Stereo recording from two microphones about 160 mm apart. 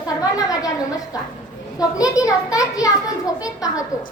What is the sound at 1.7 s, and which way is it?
A child's voice, 20° left (ahead or behind).